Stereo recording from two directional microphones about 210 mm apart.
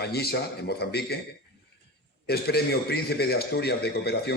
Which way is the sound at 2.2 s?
50° left (ahead or behind).